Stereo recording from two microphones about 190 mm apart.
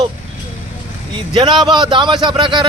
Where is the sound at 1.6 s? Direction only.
25° right (ahead or behind).